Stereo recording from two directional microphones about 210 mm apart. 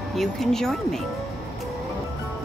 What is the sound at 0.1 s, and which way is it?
Speech, centre (ahead or behind).